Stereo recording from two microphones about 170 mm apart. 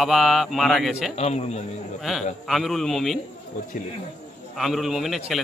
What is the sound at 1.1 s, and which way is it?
Speech, 40° left (ahead or behind).